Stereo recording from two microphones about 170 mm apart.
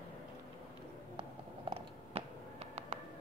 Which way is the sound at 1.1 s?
35° right (ahead or behind).